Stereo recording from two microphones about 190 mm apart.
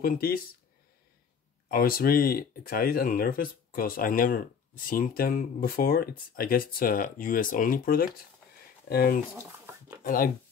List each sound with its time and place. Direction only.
0.0 s speech: 50° left (ahead or behind)
1.7 s speech: 50° left (ahead or behind)
9.3 s a sound: 10° right (ahead or behind)
10.0 s speech: 50° left (ahead or behind)